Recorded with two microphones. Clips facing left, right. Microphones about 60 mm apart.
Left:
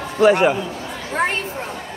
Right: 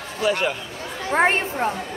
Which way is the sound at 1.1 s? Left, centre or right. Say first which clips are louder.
Right 3 dB; right.